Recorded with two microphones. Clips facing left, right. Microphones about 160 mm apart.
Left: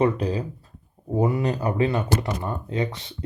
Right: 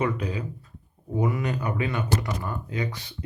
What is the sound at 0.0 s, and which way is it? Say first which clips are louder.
Speech: left 5 dB; 35° left (ahead or behind).